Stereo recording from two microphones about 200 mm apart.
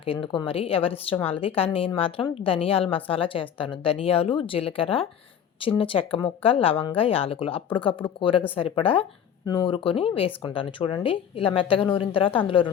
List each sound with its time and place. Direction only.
0.0 s a woman's voice: 25° left (ahead or behind)